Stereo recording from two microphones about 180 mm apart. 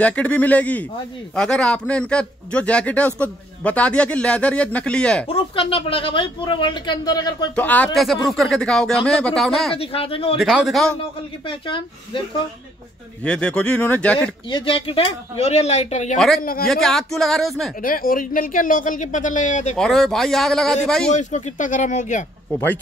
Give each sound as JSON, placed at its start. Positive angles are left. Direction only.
{"t": 0.0, "sound": "a man's voice", "side_deg": 5}
{"t": 5.3, "sound": "speech", "side_deg": 30}
{"t": 7.5, "sound": "speech", "side_deg": 10}
{"t": 9.8, "sound": "speech", "side_deg": 30}
{"t": 10.3, "sound": "speech", "side_deg": 0}
{"t": 11.4, "sound": "speech", "side_deg": 30}
{"t": 13.2, "sound": "a man's voice", "side_deg": 5}
{"t": 14.5, "sound": "speech", "side_deg": 30}
{"t": 16.6, "sound": "speech", "side_deg": 5}
{"t": 17.8, "sound": "speech", "side_deg": 50}
{"t": 19.8, "sound": "speech", "side_deg": 0}
{"t": 21.1, "sound": "speech", "side_deg": 40}
{"t": 22.5, "sound": "a man's voice", "side_deg": 10}